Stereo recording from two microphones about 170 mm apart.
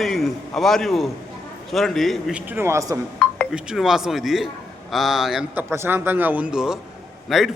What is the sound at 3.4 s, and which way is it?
A man's voice, 5° right (ahead or behind).